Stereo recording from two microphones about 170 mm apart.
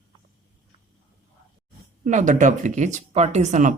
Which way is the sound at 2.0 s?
45° right (ahead or behind).